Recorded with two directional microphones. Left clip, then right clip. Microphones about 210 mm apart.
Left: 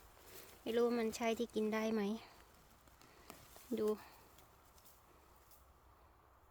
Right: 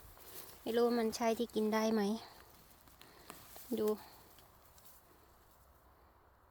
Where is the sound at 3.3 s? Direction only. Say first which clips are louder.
Right 3 dB; 5° right (ahead or behind).